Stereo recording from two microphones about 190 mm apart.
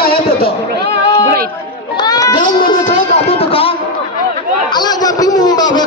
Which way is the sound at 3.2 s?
30° left (ahead or behind).